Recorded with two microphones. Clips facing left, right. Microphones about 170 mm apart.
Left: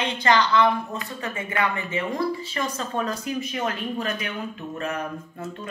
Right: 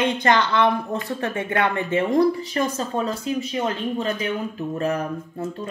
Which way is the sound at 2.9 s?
25° right (ahead or behind).